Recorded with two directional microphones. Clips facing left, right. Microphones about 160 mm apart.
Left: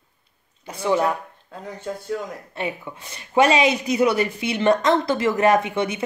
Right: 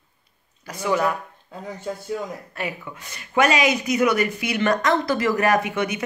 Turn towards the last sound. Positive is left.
turn(degrees=25)  # may be behind; listen again after turning